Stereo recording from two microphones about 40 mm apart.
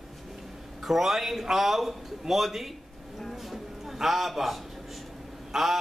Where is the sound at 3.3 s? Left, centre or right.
Centre.